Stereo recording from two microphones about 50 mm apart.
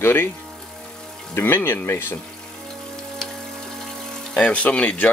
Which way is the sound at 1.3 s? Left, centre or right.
Left.